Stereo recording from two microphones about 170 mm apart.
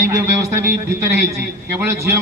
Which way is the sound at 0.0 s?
15° right (ahead or behind).